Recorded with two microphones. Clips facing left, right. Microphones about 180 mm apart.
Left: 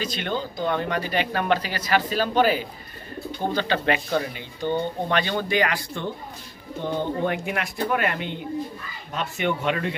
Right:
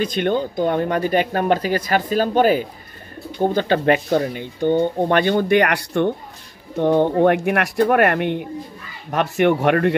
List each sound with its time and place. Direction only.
0.0 s speech: 55° right (ahead or behind)